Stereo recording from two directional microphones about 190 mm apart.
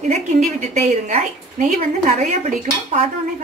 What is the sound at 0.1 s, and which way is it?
A woman's voice, 35° right (ahead or behind).